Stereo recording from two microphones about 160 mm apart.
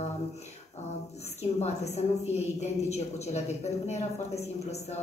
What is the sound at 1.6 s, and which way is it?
Speech, 45° left (ahead or behind).